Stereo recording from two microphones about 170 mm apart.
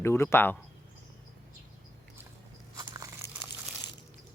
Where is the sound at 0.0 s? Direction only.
15° left (ahead or behind).